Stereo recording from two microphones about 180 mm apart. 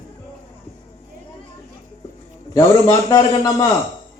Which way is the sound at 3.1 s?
20° left (ahead or behind).